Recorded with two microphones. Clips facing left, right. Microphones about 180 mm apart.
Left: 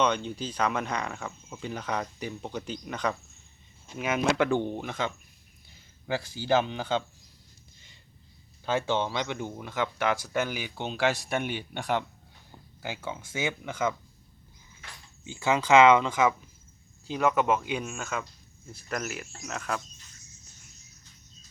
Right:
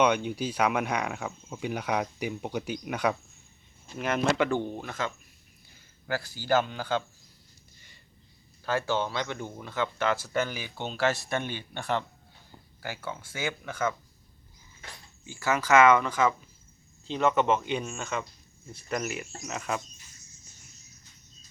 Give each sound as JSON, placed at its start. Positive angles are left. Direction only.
{"t": 0.0, "sound": "speech", "side_deg": -10}
{"t": 3.9, "sound": "speech", "side_deg": 0}
{"t": 6.6, "sound": "speech", "side_deg": 20}
{"t": 8.6, "sound": "speech", "side_deg": 20}
{"t": 15.3, "sound": "speech", "side_deg": 20}
{"t": 17.1, "sound": "speech", "side_deg": 5}